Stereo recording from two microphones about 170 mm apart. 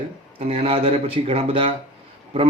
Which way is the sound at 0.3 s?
35° right (ahead or behind).